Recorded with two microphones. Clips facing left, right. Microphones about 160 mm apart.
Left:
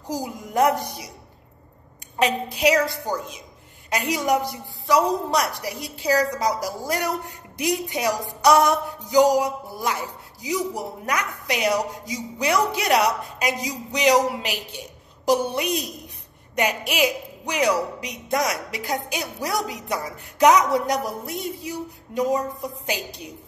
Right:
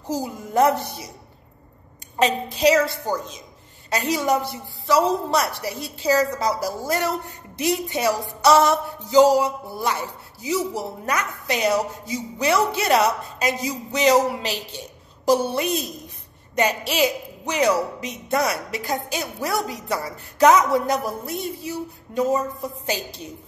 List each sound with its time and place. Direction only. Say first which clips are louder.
0.1 s a woman's voice: right 3 dB; 15° left (ahead or behind)
2.1 s a woman's voice: right 1 dB; 10° left (ahead or behind)
16.9 s a woman's voice: right 1 dB; 10° left (ahead or behind)